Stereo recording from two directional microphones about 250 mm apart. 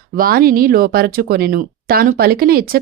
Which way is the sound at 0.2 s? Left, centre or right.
Right.